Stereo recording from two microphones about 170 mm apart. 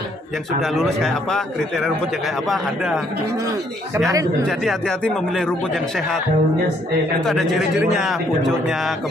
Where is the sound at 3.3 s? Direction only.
20° right (ahead or behind).